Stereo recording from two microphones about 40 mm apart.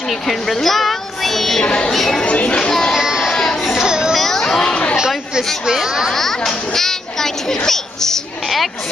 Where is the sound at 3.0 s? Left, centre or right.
Centre.